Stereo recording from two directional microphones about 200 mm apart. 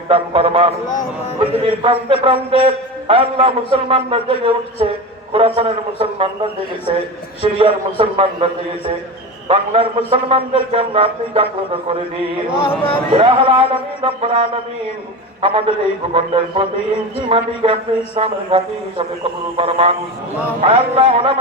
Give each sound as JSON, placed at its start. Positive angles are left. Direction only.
{"t": 0.1, "sound": "a man's voice", "side_deg": -25}
{"t": 9.5, "sound": "a man's voice", "side_deg": -30}
{"t": 13.1, "sound": "a man's voice", "side_deg": -25}